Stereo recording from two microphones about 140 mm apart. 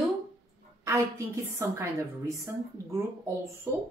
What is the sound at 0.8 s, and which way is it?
A woman's voice, 20° right (ahead or behind).